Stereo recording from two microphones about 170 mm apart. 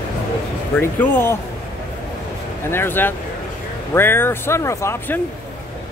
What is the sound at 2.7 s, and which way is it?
Speech, 10° left (ahead or behind).